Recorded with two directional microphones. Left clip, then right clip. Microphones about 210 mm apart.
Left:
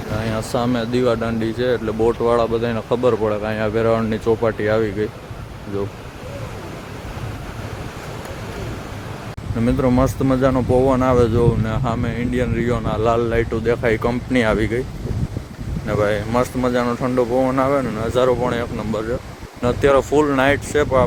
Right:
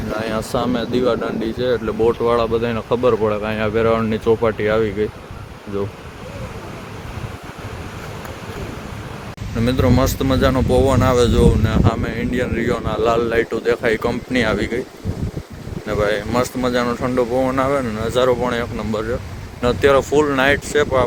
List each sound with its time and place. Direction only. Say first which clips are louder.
0.2 s speech: right 1 dB; 25° right (ahead or behind)
0.5 s speech: left 1 dB; 5° right (ahead or behind)
9.6 s speech: even; centre (ahead or behind)
15.9 s speech: even; centre (ahead or behind)